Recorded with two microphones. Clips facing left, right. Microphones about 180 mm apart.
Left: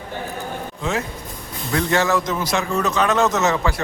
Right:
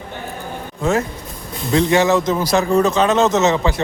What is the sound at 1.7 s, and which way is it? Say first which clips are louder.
A man's voice: right 5 dB; 20° right (ahead or behind).